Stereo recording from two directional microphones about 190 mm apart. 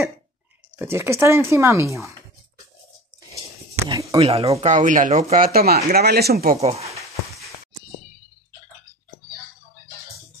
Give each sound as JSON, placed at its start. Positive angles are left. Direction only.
{"t": 0.7, "sound": "speech", "side_deg": -15}
{"t": 3.9, "sound": "speech", "side_deg": -15}
{"t": 4.2, "sound": "speech", "side_deg": -30}
{"t": 6.6, "sound": "speech", "side_deg": -35}